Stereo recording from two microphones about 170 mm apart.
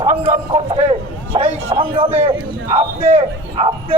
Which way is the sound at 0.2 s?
30° right (ahead or behind).